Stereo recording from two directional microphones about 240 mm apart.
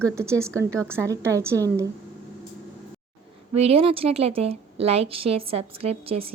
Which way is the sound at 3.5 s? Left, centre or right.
Right.